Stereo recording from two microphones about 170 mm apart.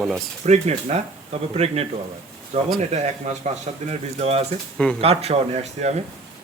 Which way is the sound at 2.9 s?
40° right (ahead or behind).